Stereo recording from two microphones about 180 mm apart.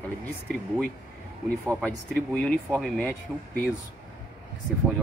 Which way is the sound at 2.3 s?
5° left (ahead or behind).